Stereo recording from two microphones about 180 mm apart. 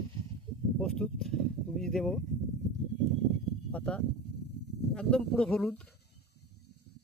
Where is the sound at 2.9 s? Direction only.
80° left.